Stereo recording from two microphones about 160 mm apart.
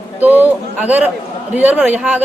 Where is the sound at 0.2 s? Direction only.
10° right (ahead or behind).